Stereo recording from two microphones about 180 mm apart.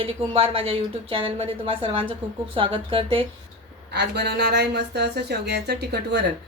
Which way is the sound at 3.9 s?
65° right (ahead or behind).